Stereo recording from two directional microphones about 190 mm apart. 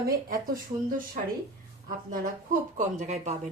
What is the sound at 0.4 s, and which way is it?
A woman's voice, 45° right (ahead or behind).